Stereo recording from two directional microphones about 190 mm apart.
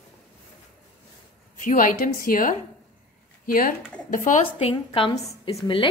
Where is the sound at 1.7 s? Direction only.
45° left (ahead or behind).